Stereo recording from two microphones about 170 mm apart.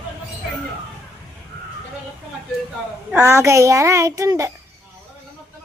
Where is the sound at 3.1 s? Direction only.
15° right (ahead or behind).